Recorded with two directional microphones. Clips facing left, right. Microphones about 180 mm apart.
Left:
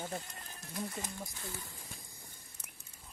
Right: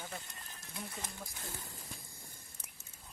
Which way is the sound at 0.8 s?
20° left (ahead or behind).